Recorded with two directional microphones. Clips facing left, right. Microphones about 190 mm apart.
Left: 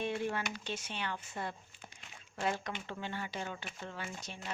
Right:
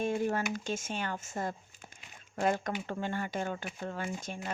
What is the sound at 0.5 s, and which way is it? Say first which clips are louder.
Speech: right 6 dB; 45° right (ahead or behind).